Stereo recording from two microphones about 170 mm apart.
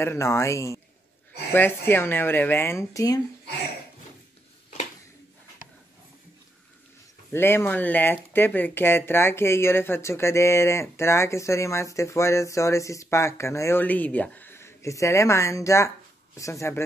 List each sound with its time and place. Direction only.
0.0 s speech: 15° left (ahead or behind)
7.3 s speech: 15° left (ahead or behind)